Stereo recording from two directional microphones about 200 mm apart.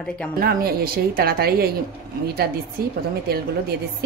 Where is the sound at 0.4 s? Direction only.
50° right (ahead or behind).